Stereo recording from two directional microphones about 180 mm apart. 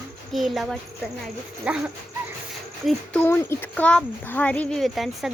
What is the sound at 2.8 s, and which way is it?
Speech, 10° left (ahead or behind).